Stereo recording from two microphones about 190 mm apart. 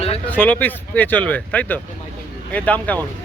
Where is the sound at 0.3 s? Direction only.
10° left (ahead or behind).